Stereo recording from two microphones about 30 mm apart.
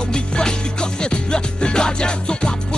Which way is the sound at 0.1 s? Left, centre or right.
Left.